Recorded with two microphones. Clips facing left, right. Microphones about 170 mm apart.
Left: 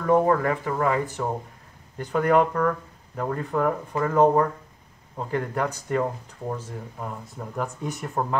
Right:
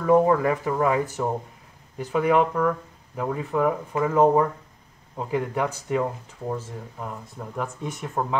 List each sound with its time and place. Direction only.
0.0 s speech: 10° right (ahead or behind)